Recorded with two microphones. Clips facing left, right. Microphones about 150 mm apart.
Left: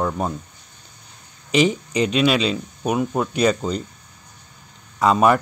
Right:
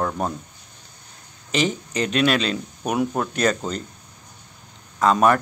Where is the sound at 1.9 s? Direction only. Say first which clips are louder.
Left 1 dB; 5° left (ahead or behind).